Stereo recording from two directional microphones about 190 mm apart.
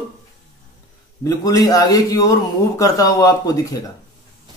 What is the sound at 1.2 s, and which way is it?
Speech, 20° left (ahead or behind).